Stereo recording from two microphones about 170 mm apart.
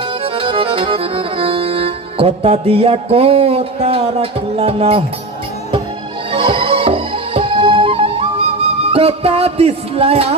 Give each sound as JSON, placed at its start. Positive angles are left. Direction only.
{"t": 0.2, "sound": "accordion", "side_deg": -35}
{"t": 6.3, "sound": "music", "side_deg": -30}